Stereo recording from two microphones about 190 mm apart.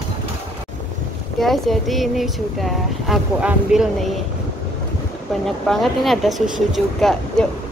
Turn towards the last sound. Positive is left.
turn(degrees=0)  # may be behind; listen again after turning